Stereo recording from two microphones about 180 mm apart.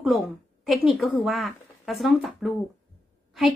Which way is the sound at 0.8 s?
Centre (ahead or behind).